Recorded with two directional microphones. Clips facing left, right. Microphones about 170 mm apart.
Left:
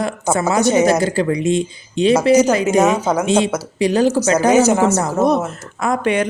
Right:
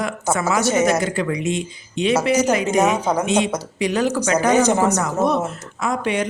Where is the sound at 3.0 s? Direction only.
5° left (ahead or behind).